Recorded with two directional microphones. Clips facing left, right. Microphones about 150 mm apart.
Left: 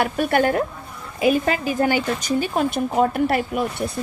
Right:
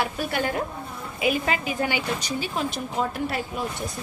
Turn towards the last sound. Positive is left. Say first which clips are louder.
# left 8 dB
turn(degrees=65)  # may be behind; listen again after turning